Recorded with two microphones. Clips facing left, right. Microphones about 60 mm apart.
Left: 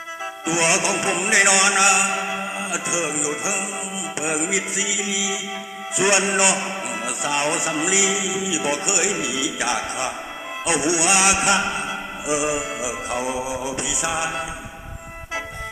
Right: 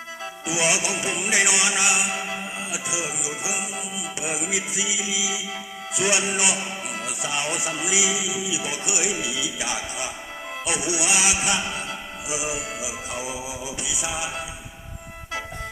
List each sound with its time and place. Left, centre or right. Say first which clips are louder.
0.4 s music: left 4 dB; left
4.2 s a man's voice: left 5 dB; left
12.3 s music: left 7 dB; left